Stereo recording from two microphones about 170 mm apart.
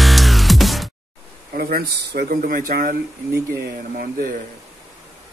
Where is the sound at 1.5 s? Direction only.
65° right (ahead or behind).